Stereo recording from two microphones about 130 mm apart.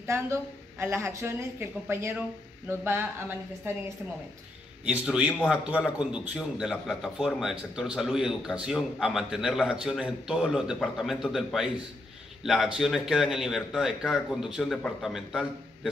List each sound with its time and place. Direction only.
0.0 s a woman's voice: 20° right (ahead or behind)
4.8 s a man's voice: 10° right (ahead or behind)
12.7 s a man's voice: 5° right (ahead or behind)